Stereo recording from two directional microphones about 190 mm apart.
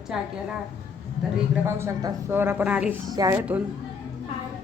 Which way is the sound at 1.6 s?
15° right (ahead or behind).